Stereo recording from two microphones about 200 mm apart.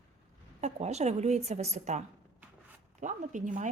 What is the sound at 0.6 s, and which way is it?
Speech, 35° right (ahead or behind).